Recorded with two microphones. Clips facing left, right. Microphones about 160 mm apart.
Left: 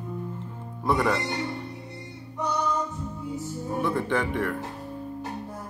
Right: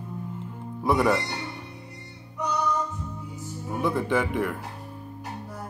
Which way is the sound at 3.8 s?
10° right (ahead or behind).